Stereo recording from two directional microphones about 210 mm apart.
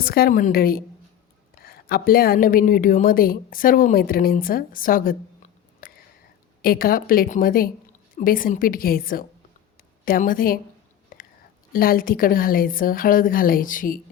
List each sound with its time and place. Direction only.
0.0 s a woman's voice: 45° left (ahead or behind)
11.1 s whispering: 40° left (ahead or behind)
11.7 s a woman's voice: 45° left (ahead or behind)